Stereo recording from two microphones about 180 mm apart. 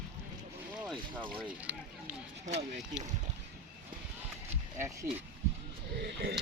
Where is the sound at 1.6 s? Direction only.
10° right (ahead or behind).